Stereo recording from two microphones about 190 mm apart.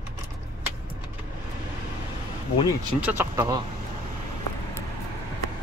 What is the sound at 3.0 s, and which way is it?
Speech, 15° right (ahead or behind).